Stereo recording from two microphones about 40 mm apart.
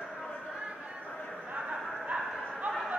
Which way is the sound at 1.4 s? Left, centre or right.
Right.